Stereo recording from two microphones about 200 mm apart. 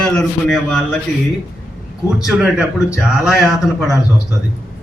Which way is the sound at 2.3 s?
5° right (ahead or behind).